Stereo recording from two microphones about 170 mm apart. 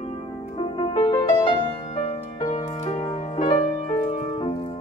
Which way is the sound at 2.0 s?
40° left (ahead or behind).